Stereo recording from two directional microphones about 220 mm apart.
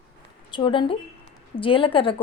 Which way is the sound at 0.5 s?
20° left (ahead or behind).